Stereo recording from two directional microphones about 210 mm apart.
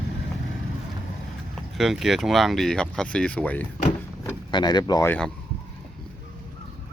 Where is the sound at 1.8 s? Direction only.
Centre (ahead or behind).